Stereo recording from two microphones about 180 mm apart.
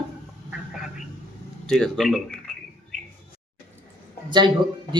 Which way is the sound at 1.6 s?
5° left (ahead or behind).